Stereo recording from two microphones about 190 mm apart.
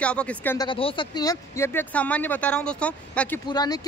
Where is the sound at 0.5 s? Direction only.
25° left (ahead or behind); by 3.4 s 5° left (ahead or behind).